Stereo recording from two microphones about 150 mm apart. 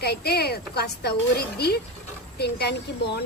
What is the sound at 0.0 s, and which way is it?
A woman's voice, 90° left.